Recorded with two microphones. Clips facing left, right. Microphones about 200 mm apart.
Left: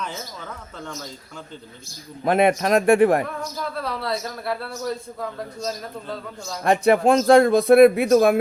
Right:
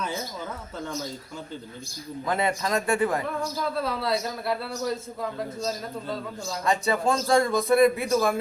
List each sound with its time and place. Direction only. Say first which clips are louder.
2.2 s speech: left 8 dB; 65° left (ahead or behind)
3.8 s a man's voice: even; centre (ahead or behind)
5.5 s a man's voice: left 1 dB; centre (ahead or behind)
6.7 s speech: left 8 dB; 60° left (ahead or behind)